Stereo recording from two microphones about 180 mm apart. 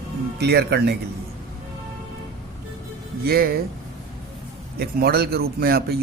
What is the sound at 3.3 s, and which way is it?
Speech, 55° right (ahead or behind).